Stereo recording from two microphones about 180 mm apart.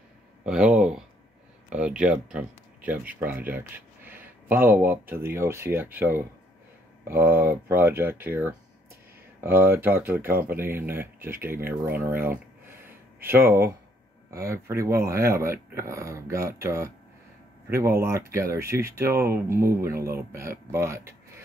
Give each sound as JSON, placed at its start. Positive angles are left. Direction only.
{"t": 0.5, "sound": "a sound", "side_deg": -5}
{"t": 1.7, "sound": "speech", "side_deg": -5}
{"t": 18.0, "sound": "speech", "side_deg": -15}